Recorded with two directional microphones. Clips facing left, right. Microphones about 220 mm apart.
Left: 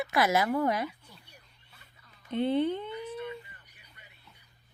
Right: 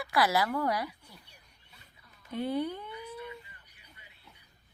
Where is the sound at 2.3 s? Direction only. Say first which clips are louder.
Left 5 dB; 25° left (ahead or behind).